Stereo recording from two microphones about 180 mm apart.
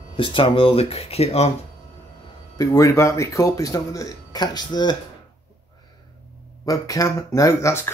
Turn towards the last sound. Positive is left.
turn(degrees=15)  # may be behind; listen again after turning